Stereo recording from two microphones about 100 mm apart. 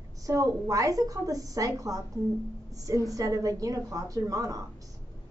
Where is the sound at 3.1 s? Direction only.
35° right (ahead or behind).